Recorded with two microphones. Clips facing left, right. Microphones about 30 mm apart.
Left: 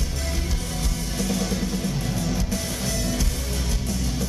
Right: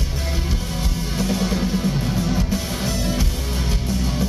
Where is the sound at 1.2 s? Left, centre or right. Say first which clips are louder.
Right 4 dB; right.